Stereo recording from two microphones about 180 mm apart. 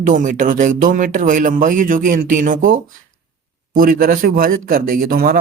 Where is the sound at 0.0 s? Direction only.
45° right (ahead or behind).